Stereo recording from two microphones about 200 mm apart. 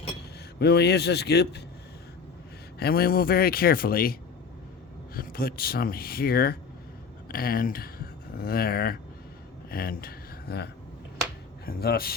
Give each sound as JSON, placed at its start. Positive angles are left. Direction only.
{"t": 0.6, "sound": "a man's voice", "side_deg": 55}
{"t": 2.7, "sound": "speech", "side_deg": 50}